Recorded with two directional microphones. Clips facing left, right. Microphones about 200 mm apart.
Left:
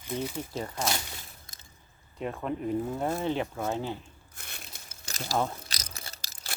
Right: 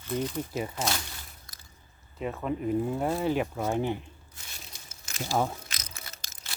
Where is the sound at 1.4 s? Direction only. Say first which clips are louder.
Even; 25° left (ahead or behind).